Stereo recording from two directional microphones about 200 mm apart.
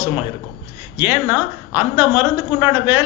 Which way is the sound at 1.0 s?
10° right (ahead or behind).